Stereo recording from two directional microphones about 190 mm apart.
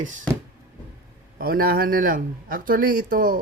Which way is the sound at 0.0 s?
40° right (ahead or behind).